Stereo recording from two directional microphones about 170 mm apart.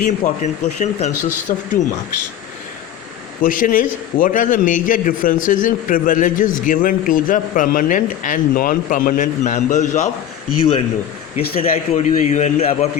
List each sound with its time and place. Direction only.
0.0 s a man's voice: 45° left (ahead or behind)
3.4 s a man's voice: 55° left (ahead or behind)
11.3 s a man's voice: 40° left (ahead or behind)